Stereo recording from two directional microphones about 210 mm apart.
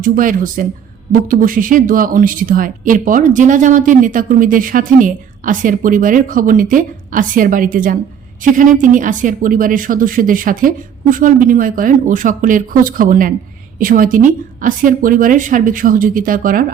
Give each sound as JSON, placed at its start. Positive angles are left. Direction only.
{"t": 0.0, "sound": "speech", "side_deg": -40}